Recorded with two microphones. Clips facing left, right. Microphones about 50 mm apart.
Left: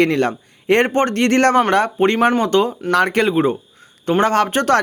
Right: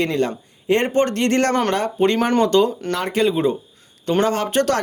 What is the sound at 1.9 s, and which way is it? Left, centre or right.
Speech, left.